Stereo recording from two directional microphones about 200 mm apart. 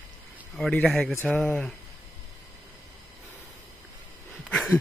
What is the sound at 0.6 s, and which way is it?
A man's voice, 5° left (ahead or behind).